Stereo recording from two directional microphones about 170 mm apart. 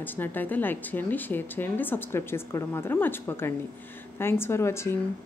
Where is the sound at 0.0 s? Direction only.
10° left (ahead or behind).